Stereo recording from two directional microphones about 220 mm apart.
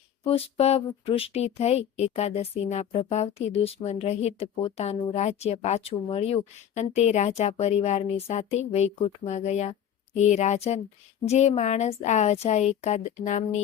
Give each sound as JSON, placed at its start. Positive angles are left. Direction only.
{"t": 0.3, "sound": "a woman's voice", "side_deg": 25}